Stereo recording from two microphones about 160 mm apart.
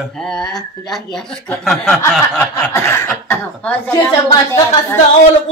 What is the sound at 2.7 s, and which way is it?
Speech, 15° left (ahead or behind).